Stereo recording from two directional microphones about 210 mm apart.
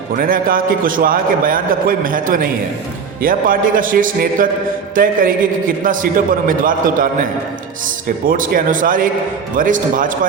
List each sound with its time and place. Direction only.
0.2 s a man's voice: 40° right (ahead or behind)